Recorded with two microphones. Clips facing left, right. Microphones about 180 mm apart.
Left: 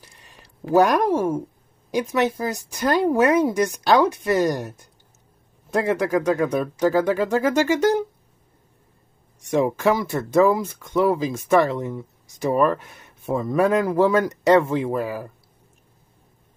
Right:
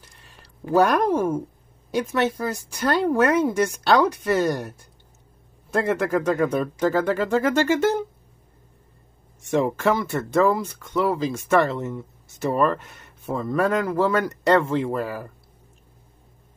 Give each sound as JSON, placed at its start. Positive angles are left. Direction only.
{"t": 0.7, "sound": "speech", "side_deg": 15}
{"t": 3.8, "sound": "speech", "side_deg": 5}
{"t": 4.2, "sound": "speech", "side_deg": 15}
{"t": 9.5, "sound": "speech", "side_deg": 10}